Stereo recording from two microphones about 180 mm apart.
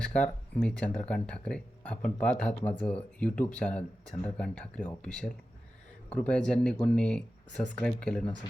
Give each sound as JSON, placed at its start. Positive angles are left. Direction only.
{"t": 0.0, "sound": "speech", "side_deg": 5}